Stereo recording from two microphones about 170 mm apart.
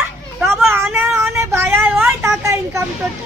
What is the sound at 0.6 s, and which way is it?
Speech, 15° right (ahead or behind).